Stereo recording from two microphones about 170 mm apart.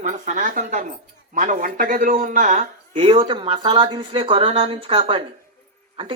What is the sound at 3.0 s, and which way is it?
Speech, 30° right (ahead or behind).